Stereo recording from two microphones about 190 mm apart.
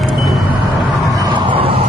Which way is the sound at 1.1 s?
25° right (ahead or behind).